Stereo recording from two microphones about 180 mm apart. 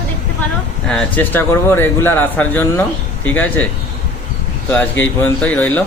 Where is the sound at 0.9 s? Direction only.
5° left (ahead or behind).